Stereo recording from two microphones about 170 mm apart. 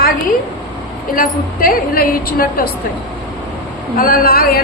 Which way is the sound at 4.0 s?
60° left (ahead or behind).